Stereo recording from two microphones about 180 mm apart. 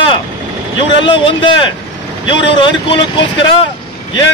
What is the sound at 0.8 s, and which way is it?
Speech, 30° left (ahead or behind).